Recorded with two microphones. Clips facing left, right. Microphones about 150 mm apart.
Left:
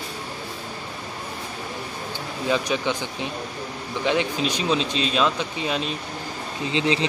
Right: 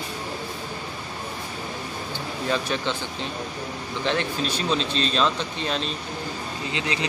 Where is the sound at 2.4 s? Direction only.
15° left (ahead or behind).